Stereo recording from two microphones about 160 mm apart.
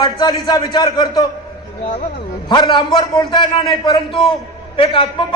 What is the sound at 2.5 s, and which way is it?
A man's voice, 30° left (ahead or behind).